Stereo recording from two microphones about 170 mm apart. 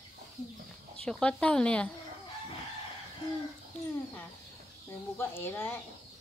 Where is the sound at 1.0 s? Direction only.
5° left (ahead or behind).